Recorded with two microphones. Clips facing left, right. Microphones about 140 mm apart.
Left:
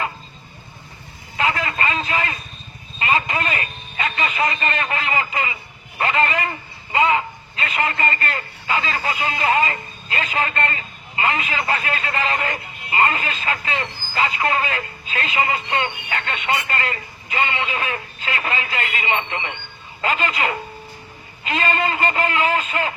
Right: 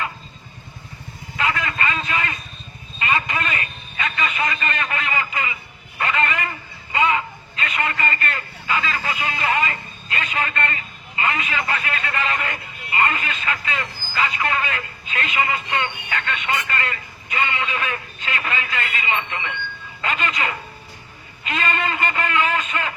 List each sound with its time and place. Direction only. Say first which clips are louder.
1.4 s vehicle: left 2 dB; 30° left (ahead or behind)
3.0 s a man's voice: left 2 dB; 30° left (ahead or behind)